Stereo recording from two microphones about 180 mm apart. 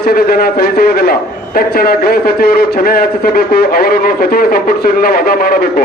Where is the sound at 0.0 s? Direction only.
55° left (ahead or behind).